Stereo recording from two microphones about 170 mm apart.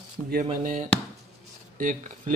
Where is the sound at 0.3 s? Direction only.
50° right (ahead or behind).